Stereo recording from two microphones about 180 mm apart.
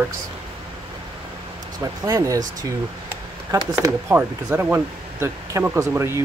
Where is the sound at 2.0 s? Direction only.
15° right (ahead or behind).